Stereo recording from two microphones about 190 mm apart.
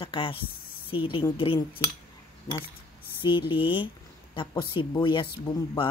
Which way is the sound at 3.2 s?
25° left (ahead or behind).